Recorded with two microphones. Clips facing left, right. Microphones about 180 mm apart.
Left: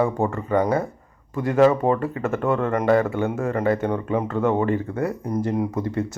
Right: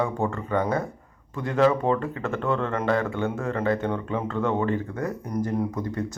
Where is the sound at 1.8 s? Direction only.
10° left (ahead or behind).